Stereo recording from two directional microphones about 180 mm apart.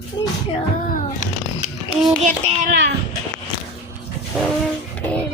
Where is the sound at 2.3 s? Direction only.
40° right (ahead or behind).